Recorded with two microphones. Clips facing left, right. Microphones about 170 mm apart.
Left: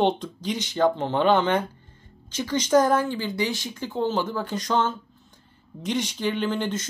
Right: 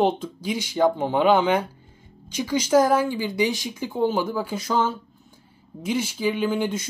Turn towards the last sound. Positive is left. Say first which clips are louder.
# right 2 dB
turn(degrees=-10)  # may be behind; listen again after turning